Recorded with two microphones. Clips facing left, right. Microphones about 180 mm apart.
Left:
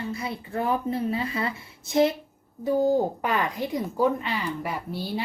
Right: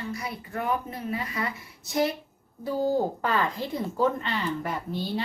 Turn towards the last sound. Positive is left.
turn(degrees=10)  # may be behind; listen again after turning